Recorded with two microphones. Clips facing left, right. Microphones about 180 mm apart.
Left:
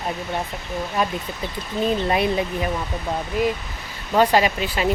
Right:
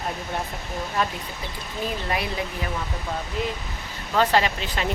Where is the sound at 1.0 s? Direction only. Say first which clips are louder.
Left 2 dB; 10° left (ahead or behind).